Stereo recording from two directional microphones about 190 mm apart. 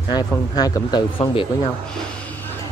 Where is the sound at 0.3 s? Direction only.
20° left (ahead or behind).